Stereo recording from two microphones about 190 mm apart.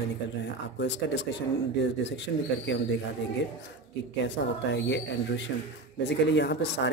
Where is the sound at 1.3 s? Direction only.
65° left (ahead or behind).